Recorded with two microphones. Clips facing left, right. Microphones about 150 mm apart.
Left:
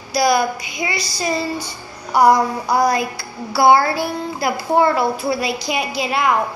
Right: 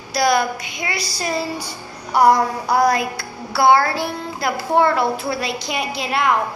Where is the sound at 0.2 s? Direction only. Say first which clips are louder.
Left 1 dB; 5° left (ahead or behind).